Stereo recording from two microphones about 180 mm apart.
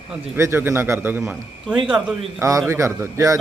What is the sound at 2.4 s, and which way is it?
Speech, 15° right (ahead or behind).